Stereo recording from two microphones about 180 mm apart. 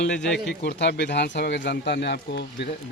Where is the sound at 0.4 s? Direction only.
70° left (ahead or behind).